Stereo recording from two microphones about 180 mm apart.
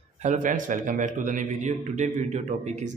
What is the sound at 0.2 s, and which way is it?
A man's voice, 45° right (ahead or behind).